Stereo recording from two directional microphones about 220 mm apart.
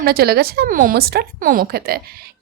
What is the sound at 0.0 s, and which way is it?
A woman's voice, 45° right (ahead or behind).